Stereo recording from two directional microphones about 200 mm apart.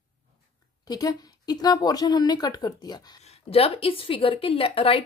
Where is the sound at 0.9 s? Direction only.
20° left (ahead or behind).